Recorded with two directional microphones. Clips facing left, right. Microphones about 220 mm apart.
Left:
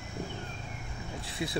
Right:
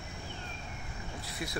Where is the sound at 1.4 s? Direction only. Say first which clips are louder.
Left 5 dB; 25° left (ahead or behind).